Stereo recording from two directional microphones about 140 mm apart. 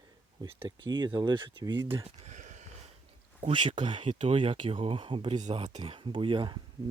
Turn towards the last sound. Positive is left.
turn(degrees=-35)  # may be behind; listen again after turning